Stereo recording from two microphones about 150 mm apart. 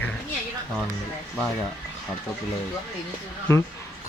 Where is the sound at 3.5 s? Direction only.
15° left (ahead or behind).